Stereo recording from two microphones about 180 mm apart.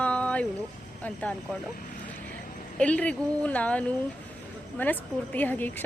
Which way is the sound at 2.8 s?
5° left (ahead or behind).